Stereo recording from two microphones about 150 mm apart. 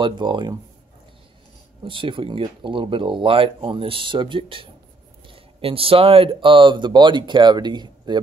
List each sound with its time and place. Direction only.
0.0 s speech: 30° right (ahead or behind)
1.9 s speech: 35° right (ahead or behind)